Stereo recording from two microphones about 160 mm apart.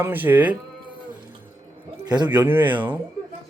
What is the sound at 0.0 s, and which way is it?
Speech, 10° right (ahead or behind).